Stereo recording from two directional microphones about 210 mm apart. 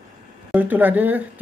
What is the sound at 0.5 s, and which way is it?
Speech, 10° right (ahead or behind).